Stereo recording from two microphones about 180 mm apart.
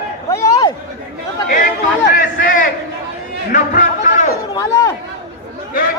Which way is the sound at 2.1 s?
50° left (ahead or behind).